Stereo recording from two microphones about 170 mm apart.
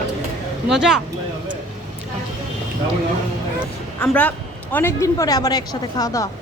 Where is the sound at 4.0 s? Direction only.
10° left (ahead or behind).